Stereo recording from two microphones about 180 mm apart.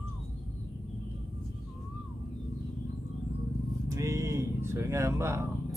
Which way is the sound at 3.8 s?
15° right (ahead or behind).